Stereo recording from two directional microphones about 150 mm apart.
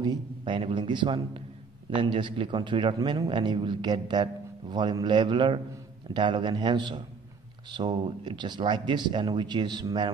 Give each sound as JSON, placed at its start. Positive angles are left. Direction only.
{"t": 0.0, "sound": "speech", "side_deg": -30}